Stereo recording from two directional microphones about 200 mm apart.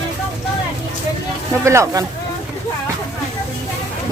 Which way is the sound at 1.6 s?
15° right (ahead or behind).